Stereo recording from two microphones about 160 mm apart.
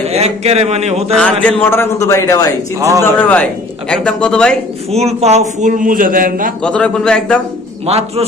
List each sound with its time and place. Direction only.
0.1 s a man's voice: 40° right (ahead or behind)
1.1 s a man's voice: 5° left (ahead or behind)
4.9 s a man's voice: 40° right (ahead or behind)
5.6 s a man's voice: 55° right (ahead or behind)
6.6 s a man's voice: 5° left (ahead or behind)
7.8 s a man's voice: 40° right (ahead or behind)